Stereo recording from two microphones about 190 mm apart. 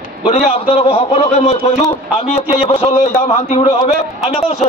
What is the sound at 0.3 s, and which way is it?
A man's voice, 35° left (ahead or behind).